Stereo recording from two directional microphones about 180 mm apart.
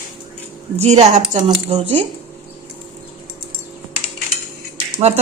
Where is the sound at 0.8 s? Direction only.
35° right (ahead or behind).